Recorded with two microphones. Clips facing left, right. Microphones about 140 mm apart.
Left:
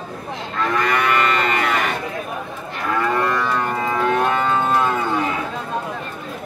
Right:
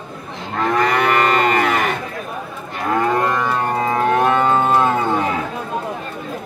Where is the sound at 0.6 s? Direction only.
45° right (ahead or behind).